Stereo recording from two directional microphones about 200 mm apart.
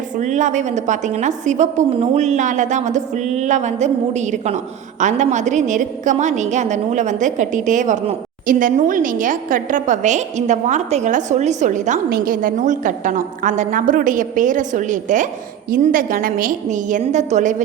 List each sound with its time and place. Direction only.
0.2 s a woman's voice: 35° right (ahead or behind)